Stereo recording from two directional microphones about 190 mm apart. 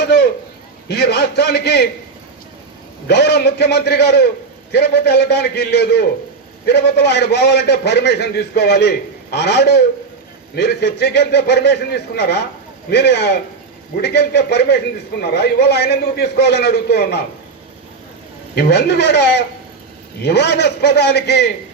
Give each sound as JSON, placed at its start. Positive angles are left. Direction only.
{"t": 0.9, "sound": "a man's voice", "side_deg": 60}
{"t": 3.1, "sound": "a man's voice", "side_deg": 60}
{"t": 18.5, "sound": "a man's voice", "side_deg": 60}